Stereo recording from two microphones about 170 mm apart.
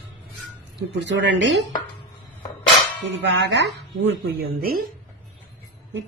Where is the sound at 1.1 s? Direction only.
90° right.